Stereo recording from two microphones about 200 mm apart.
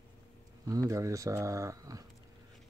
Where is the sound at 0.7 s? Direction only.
15° right (ahead or behind).